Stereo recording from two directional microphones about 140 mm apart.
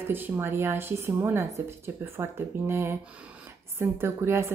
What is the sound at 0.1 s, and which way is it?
Speech, 15° right (ahead or behind).